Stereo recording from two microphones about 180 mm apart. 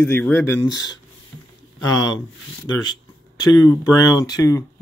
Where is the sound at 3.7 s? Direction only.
20° left (ahead or behind).